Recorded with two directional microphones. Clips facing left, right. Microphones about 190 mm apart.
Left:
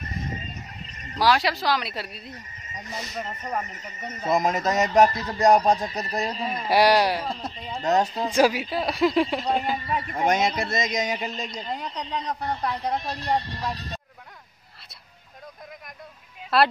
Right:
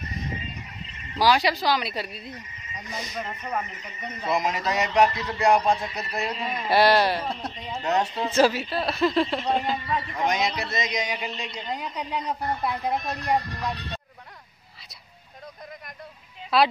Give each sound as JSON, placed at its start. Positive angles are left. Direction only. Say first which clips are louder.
{"t": 0.0, "sound": "a sound", "louder": "even", "side_deg": 45}
{"t": 1.1, "sound": "a woman's voice", "louder": "right 1 dB", "side_deg": 0}
{"t": 3.6, "sound": "speech", "louder": "even", "side_deg": 40}
{"t": 6.7, "sound": "speech", "louder": "even", "side_deg": 10}
{"t": 7.2, "sound": "a woman's voice", "louder": "even", "side_deg": 0}
{"t": 7.8, "sound": "speech", "louder": "left 2 dB", "side_deg": 40}
{"t": 8.3, "sound": "speech", "louder": "right 1 dB", "side_deg": 15}
{"t": 10.0, "sound": "a man's voice", "louder": "left 5 dB", "side_deg": 50}
{"t": 11.6, "sound": "a woman's voice", "louder": "even", "side_deg": 0}
{"t": 13.0, "sound": "speech", "louder": "right 1 dB", "side_deg": 30}
{"t": 16.5, "sound": "a woman's voice", "louder": "even", "side_deg": 0}